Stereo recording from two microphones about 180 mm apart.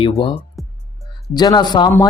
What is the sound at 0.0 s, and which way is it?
Speech, 30° left (ahead or behind).